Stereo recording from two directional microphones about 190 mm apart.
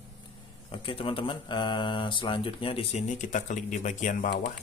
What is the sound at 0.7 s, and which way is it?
Speech, 30° left (ahead or behind).